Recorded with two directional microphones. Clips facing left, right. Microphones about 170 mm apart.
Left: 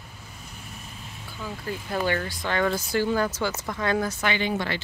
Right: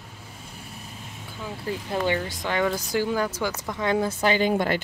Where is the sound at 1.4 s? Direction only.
25° right (ahead or behind); by 4.8 s 50° right (ahead or behind).